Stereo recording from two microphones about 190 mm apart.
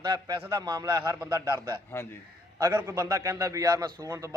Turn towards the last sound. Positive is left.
turn(degrees=-15)  # may be behind; listen again after turning